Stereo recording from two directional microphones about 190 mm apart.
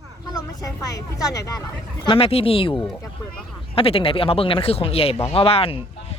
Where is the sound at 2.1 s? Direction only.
30° left (ahead or behind).